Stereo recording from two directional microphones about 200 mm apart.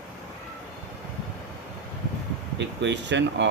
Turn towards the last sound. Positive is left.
turn(degrees=-60)  # may be behind; listen again after turning